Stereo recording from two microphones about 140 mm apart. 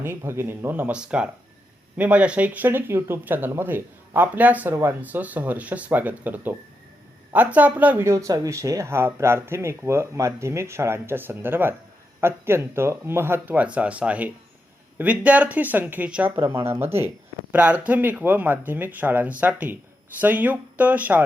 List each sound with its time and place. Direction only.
0.0 s speech: 15° right (ahead or behind)